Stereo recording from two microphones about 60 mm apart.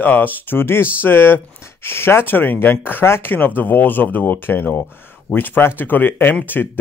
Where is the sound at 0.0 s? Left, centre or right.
Left.